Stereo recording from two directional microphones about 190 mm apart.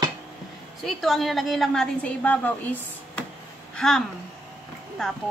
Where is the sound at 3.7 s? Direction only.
5° left (ahead or behind).